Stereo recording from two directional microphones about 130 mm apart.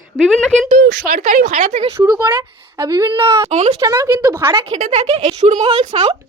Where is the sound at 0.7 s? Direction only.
75° right (ahead or behind).